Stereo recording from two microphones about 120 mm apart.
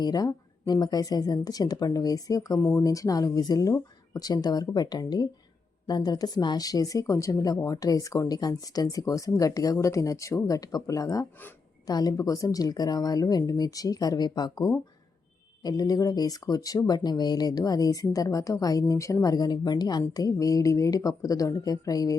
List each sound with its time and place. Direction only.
0.0 s speech: 35° left (ahead or behind)
2.6 s speech: 20° left (ahead or behind)